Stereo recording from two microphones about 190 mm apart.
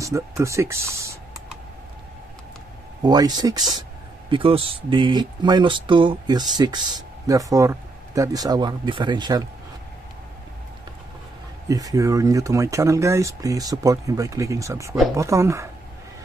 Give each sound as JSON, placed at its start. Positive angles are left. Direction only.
{"t": 0.0, "sound": "speech", "side_deg": -15}
{"t": 3.0, "sound": "speech", "side_deg": -20}
{"t": 11.7, "sound": "speech", "side_deg": -20}